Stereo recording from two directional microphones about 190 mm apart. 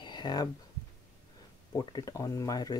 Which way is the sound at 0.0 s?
25° left (ahead or behind).